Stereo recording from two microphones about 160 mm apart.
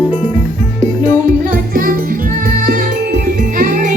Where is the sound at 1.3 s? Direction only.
65° right (ahead or behind).